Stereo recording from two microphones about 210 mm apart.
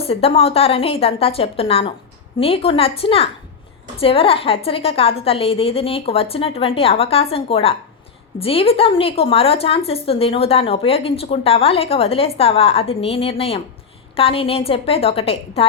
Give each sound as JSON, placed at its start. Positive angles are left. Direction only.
{"t": 0.0, "sound": "a woman's voice", "side_deg": 30}